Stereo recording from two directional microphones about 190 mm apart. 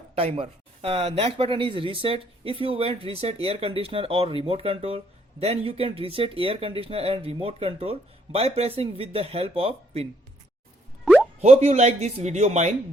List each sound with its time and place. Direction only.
0.2 s speech: 30° right (ahead or behind)
11.0 s plop: 5° right (ahead or behind)
11.3 s speech: 35° right (ahead or behind)